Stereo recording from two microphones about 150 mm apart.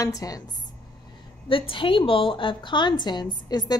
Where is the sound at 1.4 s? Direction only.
35° left (ahead or behind).